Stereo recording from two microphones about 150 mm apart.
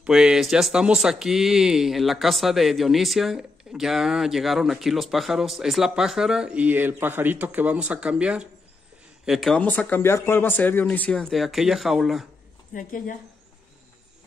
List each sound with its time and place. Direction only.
0.0 s speech: 5° right (ahead or behind)
9.6 s speech: 10° left (ahead or behind)
12.7 s speech: 65° left (ahead or behind)